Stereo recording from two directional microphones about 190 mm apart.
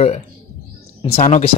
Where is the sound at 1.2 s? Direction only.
40° left (ahead or behind).